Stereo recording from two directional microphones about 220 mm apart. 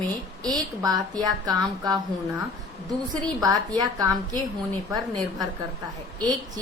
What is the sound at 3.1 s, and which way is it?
A woman's voice, 15° right (ahead or behind).